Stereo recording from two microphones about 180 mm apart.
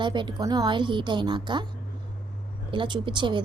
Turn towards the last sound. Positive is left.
turn(degrees=-25)  # may be behind; listen again after turning